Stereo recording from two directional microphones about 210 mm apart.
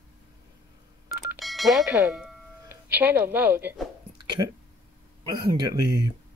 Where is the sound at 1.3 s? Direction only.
Centre (ahead or behind).